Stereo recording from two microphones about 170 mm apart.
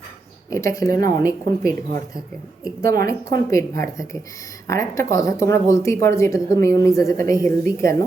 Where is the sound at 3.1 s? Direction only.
15° left (ahead or behind).